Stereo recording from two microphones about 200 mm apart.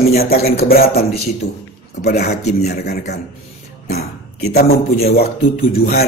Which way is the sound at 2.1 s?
55° left (ahead or behind).